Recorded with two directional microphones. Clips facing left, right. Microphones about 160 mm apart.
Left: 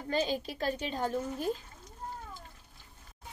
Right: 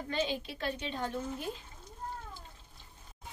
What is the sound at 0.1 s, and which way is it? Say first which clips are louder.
A woman's voice: left 4 dB; 40° left (ahead or behind).